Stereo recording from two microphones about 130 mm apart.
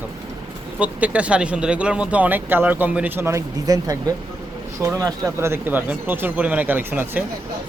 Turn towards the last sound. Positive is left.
turn(degrees=-15)  # may be behind; listen again after turning